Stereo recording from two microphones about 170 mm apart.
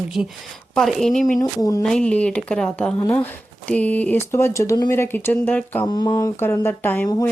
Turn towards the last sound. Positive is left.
turn(degrees=10)  # may be behind; listen again after turning